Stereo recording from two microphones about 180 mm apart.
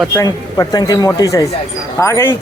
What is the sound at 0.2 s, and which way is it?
Speech, 20° left (ahead or behind).